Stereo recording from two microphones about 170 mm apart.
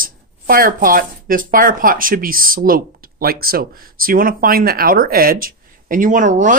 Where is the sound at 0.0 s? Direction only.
55° right (ahead or behind).